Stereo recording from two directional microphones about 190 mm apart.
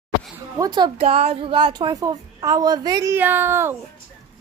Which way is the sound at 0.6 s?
20° right (ahead or behind).